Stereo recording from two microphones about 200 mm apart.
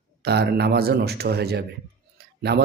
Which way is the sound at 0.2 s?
55° right (ahead or behind).